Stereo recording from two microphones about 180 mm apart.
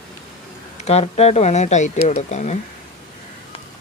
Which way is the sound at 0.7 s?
35° left (ahead or behind).